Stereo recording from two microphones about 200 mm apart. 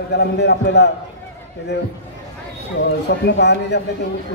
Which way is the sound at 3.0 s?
60° left (ahead or behind).